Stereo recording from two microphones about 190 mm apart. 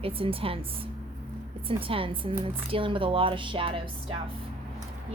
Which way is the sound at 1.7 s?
30° right (ahead or behind).